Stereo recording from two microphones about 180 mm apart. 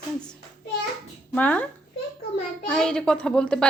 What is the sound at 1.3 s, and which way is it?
A woman's voice, 10° left (ahead or behind).